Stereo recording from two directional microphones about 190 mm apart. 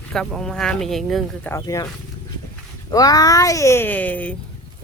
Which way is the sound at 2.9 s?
20° left (ahead or behind).